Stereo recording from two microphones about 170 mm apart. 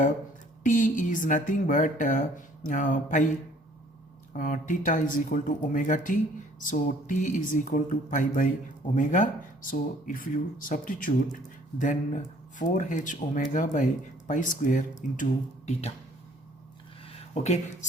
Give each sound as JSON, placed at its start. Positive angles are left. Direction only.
{"t": 0.6, "sound": "speech", "side_deg": 50}
{"t": 4.4, "sound": "speech", "side_deg": 50}
{"t": 17.1, "sound": "speech", "side_deg": 40}